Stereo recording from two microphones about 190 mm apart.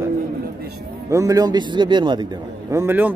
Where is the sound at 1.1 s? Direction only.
15° right (ahead or behind).